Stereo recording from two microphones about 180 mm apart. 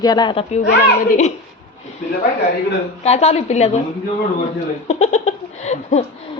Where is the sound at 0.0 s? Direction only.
20° left (ahead or behind).